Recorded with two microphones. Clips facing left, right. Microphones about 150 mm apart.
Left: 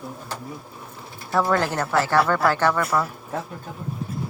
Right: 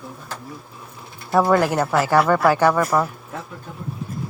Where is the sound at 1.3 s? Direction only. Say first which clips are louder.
Right 5 dB; 15° right (ahead or behind).